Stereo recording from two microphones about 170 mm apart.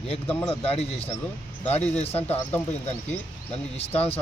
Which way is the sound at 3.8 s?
35° left (ahead or behind).